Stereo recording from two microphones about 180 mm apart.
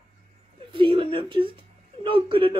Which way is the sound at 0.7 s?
30° right (ahead or behind).